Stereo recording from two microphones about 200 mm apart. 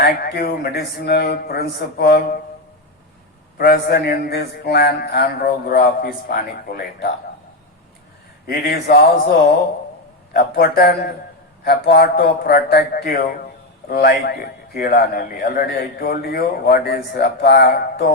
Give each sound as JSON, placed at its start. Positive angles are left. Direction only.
{"t": 0.0, "sound": "a man's voice", "side_deg": 50}
{"t": 3.6, "sound": "a man's voice", "side_deg": 45}
{"t": 8.4, "sound": "a man's voice", "side_deg": 50}
{"t": 10.3, "sound": "a man's voice", "side_deg": 50}